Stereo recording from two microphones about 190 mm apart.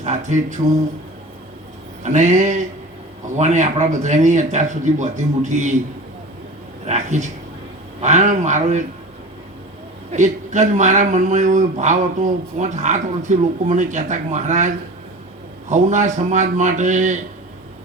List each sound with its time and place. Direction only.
0.0 s speech: 40° right (ahead or behind)
2.0 s speech: 40° right (ahead or behind)
6.8 s speech: 40° right (ahead or behind)
10.1 s speech: 40° right (ahead or behind)
15.7 s speech: 40° right (ahead or behind)